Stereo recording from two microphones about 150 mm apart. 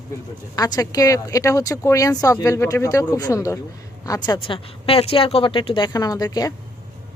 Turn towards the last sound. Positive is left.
turn(degrees=25)  # may be behind; listen again after turning